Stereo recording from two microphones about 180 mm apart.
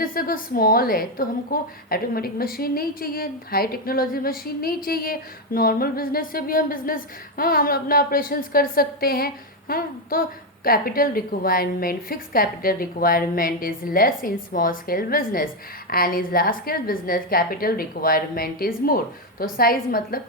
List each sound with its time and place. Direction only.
0.0 s a woman's voice: 55° left (ahead or behind)